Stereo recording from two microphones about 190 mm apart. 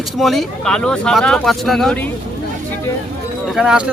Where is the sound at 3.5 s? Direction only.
5° right (ahead or behind).